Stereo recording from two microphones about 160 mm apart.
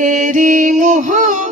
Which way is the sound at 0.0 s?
55° right (ahead or behind).